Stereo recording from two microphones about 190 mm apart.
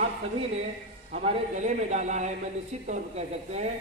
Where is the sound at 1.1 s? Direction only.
40° right (ahead or behind).